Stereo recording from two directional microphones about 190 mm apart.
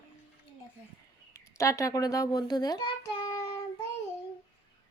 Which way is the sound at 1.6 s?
15° left (ahead or behind).